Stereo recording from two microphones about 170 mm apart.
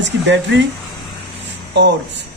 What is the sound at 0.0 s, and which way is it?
Speech, 90° right.